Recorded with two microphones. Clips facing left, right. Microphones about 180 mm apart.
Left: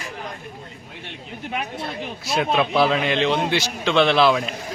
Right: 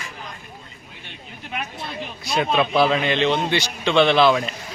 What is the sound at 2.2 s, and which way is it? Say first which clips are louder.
A man's voice: even; centre (ahead or behind).